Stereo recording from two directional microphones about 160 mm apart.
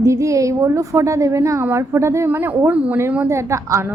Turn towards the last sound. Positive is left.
turn(degrees=-20)  # may be behind; listen again after turning